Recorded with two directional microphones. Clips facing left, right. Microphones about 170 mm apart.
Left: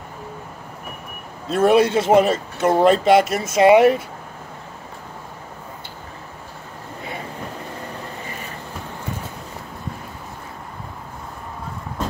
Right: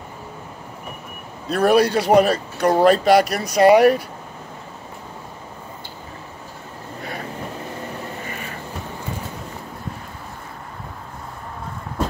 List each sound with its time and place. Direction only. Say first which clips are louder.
1.5 s speech: left 1 dB; 25° left (ahead or behind)